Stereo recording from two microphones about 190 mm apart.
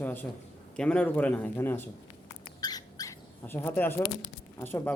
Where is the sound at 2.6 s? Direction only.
20° left (ahead or behind).